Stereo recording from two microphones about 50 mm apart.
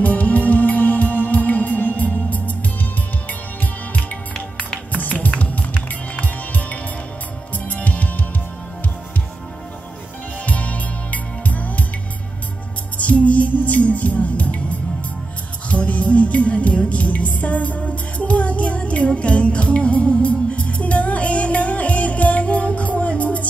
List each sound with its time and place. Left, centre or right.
0.0 s music: left
5.0 s music: left
10.4 s music: left
12.9 s music: left